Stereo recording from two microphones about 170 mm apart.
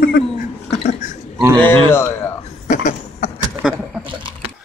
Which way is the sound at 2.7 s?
45° left (ahead or behind).